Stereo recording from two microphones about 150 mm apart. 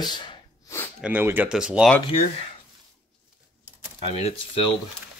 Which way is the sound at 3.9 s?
40° left (ahead or behind).